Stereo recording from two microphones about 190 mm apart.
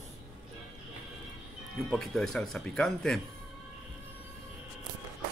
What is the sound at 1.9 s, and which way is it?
Speech, centre (ahead or behind).